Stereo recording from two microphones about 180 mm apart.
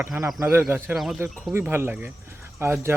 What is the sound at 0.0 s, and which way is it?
A man's voice, 15° right (ahead or behind).